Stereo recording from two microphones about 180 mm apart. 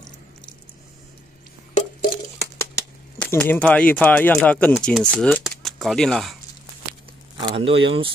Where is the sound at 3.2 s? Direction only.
10° left (ahead or behind).